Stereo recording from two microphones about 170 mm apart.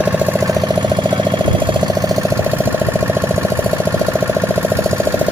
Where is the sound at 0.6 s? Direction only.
25° right (ahead or behind).